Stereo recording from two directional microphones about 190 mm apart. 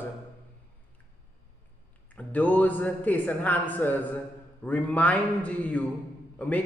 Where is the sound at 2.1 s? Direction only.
10° left (ahead or behind).